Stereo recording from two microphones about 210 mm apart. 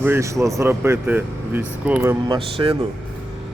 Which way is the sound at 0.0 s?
15° right (ahead or behind).